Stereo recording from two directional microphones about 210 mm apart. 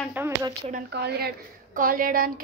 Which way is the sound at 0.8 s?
50° right (ahead or behind).